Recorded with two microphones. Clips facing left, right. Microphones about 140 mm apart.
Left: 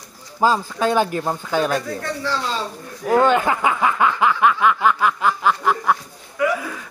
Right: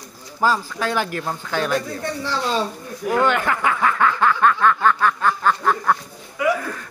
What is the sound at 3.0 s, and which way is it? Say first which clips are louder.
Speech: left 3 dB; 20° left (ahead or behind).